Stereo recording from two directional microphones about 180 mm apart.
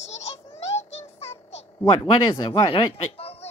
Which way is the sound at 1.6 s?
25° left (ahead or behind).